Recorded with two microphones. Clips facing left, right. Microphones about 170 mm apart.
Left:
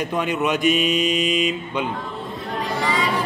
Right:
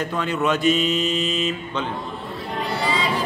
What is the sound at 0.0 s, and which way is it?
Speech, 15° left (ahead or behind).